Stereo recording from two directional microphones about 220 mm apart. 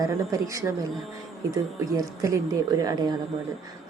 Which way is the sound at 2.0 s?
15° right (ahead or behind).